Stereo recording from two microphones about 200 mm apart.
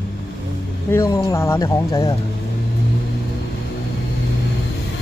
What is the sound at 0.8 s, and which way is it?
Speech, 15° left (ahead or behind).